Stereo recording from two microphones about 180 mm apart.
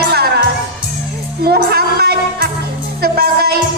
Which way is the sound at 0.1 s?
65° right (ahead or behind).